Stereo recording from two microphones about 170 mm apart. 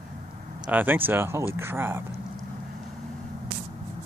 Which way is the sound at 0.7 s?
10° right (ahead or behind).